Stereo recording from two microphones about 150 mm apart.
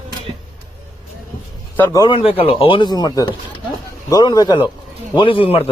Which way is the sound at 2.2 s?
40° left (ahead or behind).